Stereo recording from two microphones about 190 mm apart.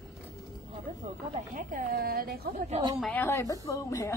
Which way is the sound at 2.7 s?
25° right (ahead or behind).